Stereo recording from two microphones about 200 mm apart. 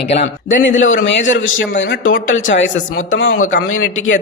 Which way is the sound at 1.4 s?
75° left (ahead or behind).